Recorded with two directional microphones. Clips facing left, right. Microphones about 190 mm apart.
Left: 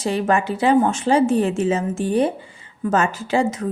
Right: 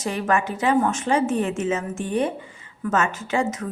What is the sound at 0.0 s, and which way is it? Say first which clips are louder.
A woman's voice: left 3 dB; 30° left (ahead or behind).